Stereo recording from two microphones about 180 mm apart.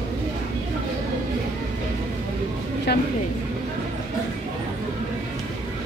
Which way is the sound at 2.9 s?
65° left (ahead or behind).